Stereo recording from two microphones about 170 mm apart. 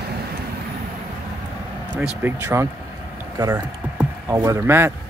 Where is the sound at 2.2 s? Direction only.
15° right (ahead or behind).